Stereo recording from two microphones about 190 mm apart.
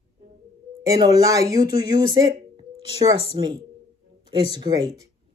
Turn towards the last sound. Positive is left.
turn(degrees=-20)  # may be behind; listen again after turning